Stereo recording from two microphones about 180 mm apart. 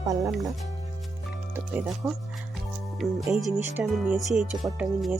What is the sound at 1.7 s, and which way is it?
Music, 5° right (ahead or behind).